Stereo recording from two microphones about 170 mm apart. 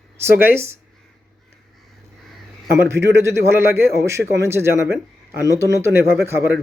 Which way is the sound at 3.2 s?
15° right (ahead or behind).